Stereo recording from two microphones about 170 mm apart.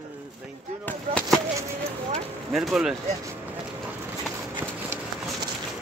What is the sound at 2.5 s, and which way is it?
Speech, centre (ahead or behind).